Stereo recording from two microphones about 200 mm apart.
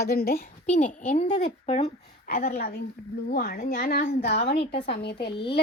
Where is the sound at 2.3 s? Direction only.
45° left (ahead or behind).